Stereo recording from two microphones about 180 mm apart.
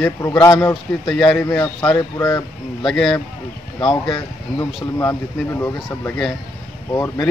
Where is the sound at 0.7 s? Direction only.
Centre (ahead or behind).